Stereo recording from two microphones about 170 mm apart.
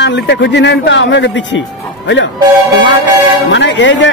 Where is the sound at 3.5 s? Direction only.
90° left.